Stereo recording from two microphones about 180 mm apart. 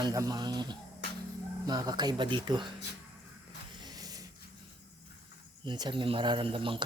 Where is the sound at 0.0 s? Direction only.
20° right (ahead or behind).